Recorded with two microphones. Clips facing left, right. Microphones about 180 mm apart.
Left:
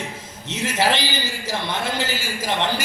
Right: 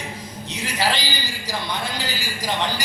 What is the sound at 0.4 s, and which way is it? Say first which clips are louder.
A woman's voice: left 3 dB; 25° left (ahead or behind).